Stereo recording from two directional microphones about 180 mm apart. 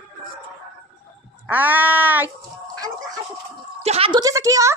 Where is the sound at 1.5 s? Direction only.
10° right (ahead or behind).